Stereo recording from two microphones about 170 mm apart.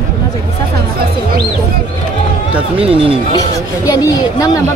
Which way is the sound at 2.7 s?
35° right (ahead or behind).